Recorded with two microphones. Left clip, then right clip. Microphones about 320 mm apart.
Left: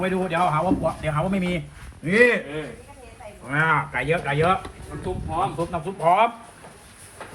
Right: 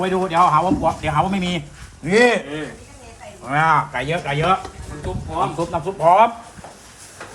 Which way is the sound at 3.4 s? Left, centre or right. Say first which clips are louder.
Right 5 dB; centre.